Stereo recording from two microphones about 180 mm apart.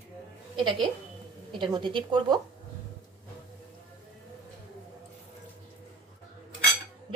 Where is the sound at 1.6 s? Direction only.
25° right (ahead or behind).